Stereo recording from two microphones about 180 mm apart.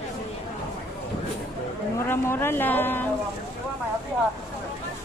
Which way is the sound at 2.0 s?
10° left (ahead or behind).